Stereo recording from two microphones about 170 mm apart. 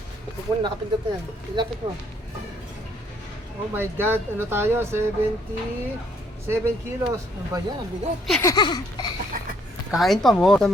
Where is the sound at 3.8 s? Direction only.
10° right (ahead or behind).